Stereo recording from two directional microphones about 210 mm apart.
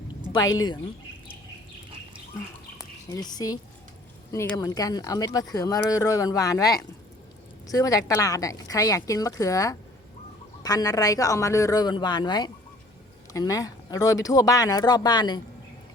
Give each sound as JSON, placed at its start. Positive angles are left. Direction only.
{"t": 0.3, "sound": "speech", "side_deg": 20}
{"t": 2.7, "sound": "speech", "side_deg": 15}